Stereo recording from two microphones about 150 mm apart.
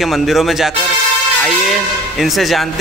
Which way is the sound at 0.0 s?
Centre (ahead or behind).